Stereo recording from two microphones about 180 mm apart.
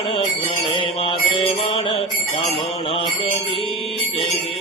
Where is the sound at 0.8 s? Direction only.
30° left (ahead or behind).